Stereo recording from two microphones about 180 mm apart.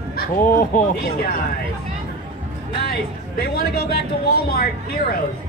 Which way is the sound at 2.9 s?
60° left (ahead or behind).